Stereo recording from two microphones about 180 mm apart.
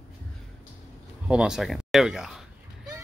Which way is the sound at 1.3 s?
5° right (ahead or behind).